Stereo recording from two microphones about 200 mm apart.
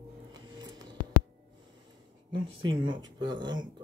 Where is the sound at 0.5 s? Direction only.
20° right (ahead or behind).